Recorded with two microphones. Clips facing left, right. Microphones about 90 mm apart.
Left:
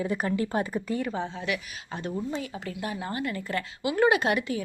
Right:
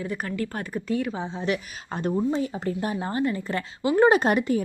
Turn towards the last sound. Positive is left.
turn(degrees=-40)  # may be behind; listen again after turning